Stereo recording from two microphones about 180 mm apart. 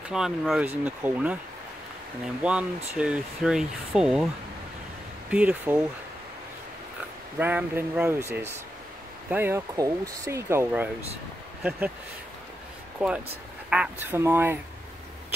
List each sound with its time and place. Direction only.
0.1 s speech: 5° right (ahead or behind)
2.4 s speech: 10° right (ahead or behind)
5.3 s speech: 5° right (ahead or behind)
7.3 s speech: 10° right (ahead or behind)
13.0 s speech: 5° right (ahead or behind)